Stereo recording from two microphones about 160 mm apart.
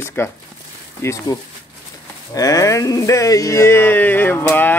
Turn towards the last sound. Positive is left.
turn(degrees=10)  # may be behind; listen again after turning